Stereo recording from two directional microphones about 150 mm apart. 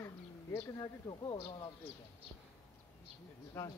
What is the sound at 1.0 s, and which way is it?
Speech, 30° left (ahead or behind).